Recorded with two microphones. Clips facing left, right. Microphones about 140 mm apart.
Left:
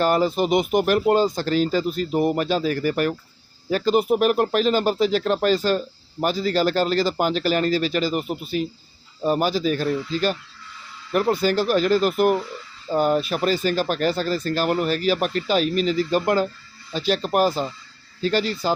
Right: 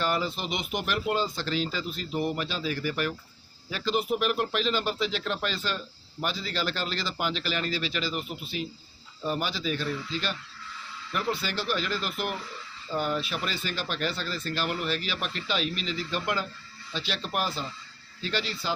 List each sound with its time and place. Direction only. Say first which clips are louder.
0.0 s speech: left 10 dB; 45° left (ahead or behind)